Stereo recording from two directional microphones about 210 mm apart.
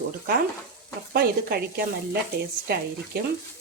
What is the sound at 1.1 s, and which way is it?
Speech, 45° right (ahead or behind).